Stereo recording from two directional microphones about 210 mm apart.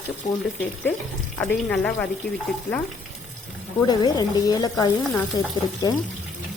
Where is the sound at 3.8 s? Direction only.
20° left (ahead or behind).